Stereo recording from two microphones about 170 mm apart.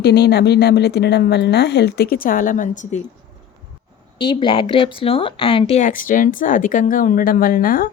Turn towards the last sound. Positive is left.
turn(degrees=55)  # may be behind; listen again after turning